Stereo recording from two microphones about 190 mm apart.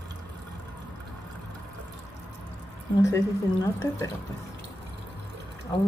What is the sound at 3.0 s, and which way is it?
Speech, 15° left (ahead or behind).